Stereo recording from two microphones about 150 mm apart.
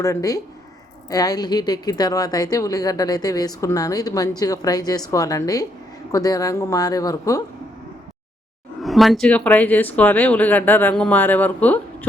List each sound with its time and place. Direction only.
0.0 s a woman's voice: 20° left (ahead or behind)
8.8 s speech: centre (ahead or behind)